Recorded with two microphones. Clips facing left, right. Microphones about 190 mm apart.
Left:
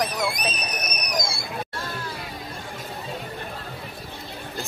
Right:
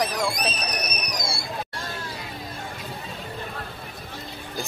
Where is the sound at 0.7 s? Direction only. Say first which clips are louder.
Even; 70° right (ahead or behind).